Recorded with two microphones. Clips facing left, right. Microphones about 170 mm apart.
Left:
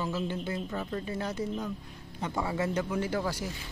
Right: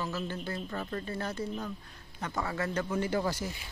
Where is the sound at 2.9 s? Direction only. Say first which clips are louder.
Even; 5° left (ahead or behind).